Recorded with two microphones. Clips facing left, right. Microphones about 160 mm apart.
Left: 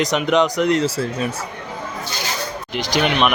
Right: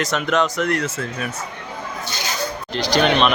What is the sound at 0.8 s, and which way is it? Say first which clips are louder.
Speech: left 5 dB; 35° left (ahead or behind).